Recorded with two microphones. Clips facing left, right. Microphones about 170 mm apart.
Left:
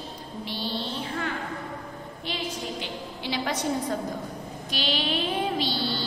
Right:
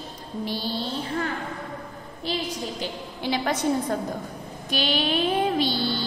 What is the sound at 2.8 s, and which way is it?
Speech, 45° right (ahead or behind).